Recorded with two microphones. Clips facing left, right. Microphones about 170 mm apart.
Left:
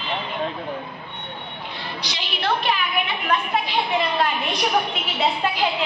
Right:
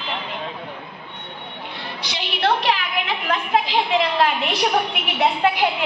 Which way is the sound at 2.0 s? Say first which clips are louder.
Right 4 dB; 60° right (ahead or behind).